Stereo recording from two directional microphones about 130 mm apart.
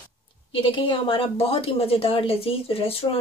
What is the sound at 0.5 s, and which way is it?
Speech, 40° left (ahead or behind).